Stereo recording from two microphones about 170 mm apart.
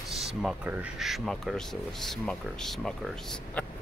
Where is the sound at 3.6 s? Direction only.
5° left (ahead or behind).